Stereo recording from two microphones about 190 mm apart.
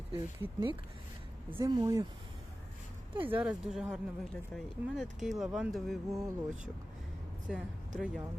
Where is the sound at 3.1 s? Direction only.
25° right (ahead or behind).